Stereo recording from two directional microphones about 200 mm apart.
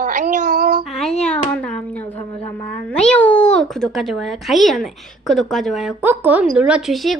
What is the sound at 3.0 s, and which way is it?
Speech, 5° left (ahead or behind).